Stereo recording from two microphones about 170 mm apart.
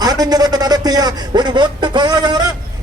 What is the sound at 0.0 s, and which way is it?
A man's voice, 25° right (ahead or behind).